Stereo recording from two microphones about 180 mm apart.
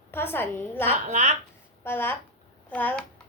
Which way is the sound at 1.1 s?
40° right (ahead or behind).